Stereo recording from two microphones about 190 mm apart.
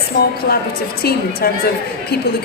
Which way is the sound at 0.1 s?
55° left (ahead or behind).